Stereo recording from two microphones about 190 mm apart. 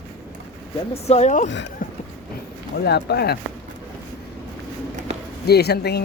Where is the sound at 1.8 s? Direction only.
45° left (ahead or behind).